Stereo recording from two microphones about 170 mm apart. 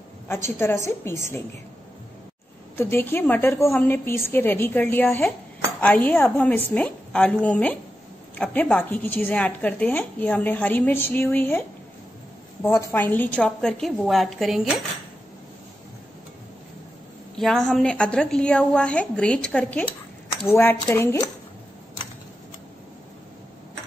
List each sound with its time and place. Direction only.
0.6 s a woman's voice: 15° left (ahead or behind)
2.8 s a woman's voice: 15° left (ahead or behind)
12.6 s a woman's voice: 10° left (ahead or behind)
17.4 s a woman's voice: 5° left (ahead or behind)